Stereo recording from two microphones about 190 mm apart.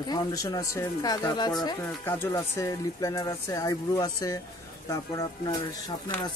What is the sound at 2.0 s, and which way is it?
Speech, 10° left (ahead or behind).